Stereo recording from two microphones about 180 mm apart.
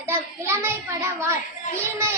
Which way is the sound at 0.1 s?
15° right (ahead or behind).